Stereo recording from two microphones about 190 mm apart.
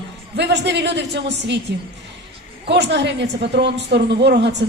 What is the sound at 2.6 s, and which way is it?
A woman's voice, 65° right (ahead or behind).